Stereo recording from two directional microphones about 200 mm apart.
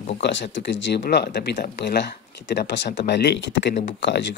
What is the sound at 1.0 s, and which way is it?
Speech, 50° left (ahead or behind).